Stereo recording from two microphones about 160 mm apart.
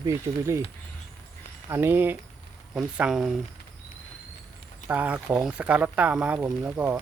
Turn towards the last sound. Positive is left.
turn(degrees=-10)  # may be behind; listen again after turning